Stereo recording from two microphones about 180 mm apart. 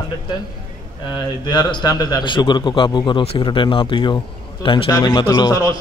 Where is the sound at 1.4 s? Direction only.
25° left (ahead or behind).